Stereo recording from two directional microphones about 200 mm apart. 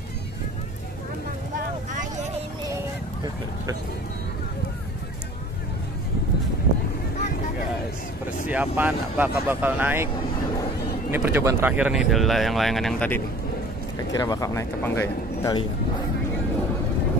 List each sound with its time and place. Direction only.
8.5 s speech: 5° right (ahead or behind)
11.1 s speech: 10° right (ahead or behind)
14.1 s speech: 15° left (ahead or behind)